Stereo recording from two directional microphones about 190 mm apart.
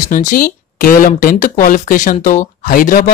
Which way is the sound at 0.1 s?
45° left (ahead or behind).